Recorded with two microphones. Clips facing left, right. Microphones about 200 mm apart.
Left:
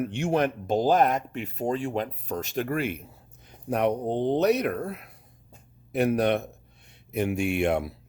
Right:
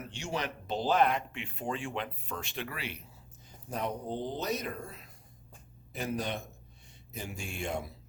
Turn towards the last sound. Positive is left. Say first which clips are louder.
# left 12 dB
turn(degrees=65)  # may be behind; listen again after turning